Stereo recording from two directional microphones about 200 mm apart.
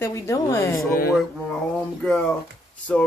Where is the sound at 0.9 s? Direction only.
45° left (ahead or behind).